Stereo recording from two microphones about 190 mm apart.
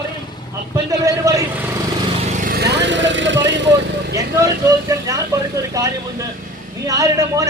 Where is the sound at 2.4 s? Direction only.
60° right (ahead or behind).